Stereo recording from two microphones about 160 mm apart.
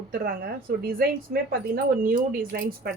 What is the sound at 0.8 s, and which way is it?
Speech, 70° right (ahead or behind).